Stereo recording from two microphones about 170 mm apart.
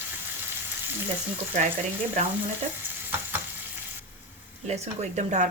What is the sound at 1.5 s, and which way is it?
Speech, 45° right (ahead or behind).